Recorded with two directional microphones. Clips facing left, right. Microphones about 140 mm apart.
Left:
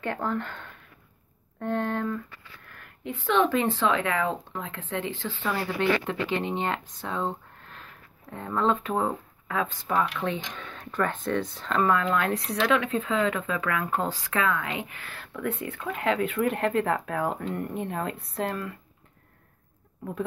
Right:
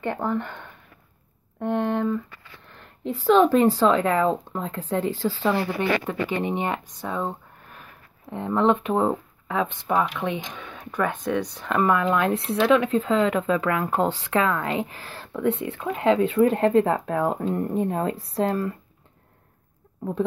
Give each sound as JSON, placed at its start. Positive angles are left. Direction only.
{"t": 0.0, "sound": "speech", "side_deg": -15}
{"t": 5.5, "sound": "speech", "side_deg": -20}